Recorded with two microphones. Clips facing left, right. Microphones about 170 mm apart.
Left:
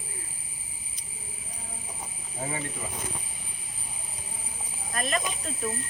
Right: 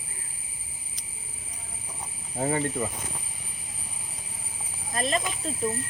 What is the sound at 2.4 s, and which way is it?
Speech, 75° right (ahead or behind).